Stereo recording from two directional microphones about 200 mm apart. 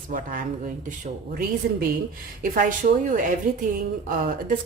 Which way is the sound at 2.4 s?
45° right (ahead or behind).